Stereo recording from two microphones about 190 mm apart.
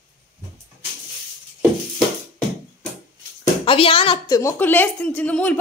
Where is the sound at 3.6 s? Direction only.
25° left (ahead or behind).